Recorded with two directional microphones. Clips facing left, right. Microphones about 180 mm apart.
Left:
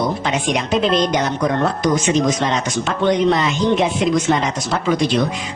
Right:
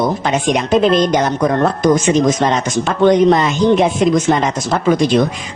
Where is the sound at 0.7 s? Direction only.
50° right (ahead or behind).